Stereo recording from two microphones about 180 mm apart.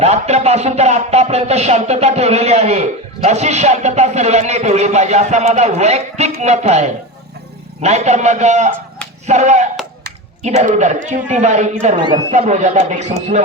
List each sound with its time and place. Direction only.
0.0 s speech: 35° right (ahead or behind)
11.9 s speech: 25° right (ahead or behind)
12.3 s speech: 40° right (ahead or behind)